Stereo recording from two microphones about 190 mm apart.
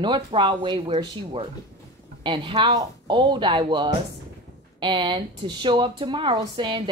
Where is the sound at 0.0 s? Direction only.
25° right (ahead or behind).